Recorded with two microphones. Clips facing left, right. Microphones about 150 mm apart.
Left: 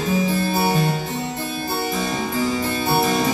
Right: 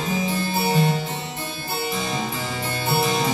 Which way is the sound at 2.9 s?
50° left (ahead or behind).